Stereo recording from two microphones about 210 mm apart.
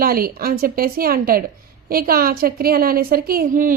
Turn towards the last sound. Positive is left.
turn(degrees=-45)  # may be behind; listen again after turning